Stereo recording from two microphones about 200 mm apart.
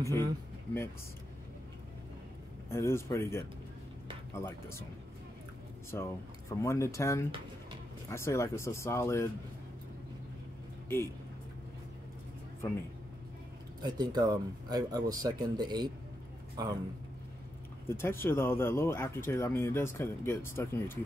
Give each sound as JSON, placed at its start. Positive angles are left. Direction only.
{"t": 0.0, "sound": "speech", "side_deg": -20}
{"t": 2.7, "sound": "speech", "side_deg": 15}
{"t": 5.9, "sound": "speech", "side_deg": 10}
{"t": 13.8, "sound": "speech", "side_deg": -20}
{"t": 17.8, "sound": "speech", "side_deg": 10}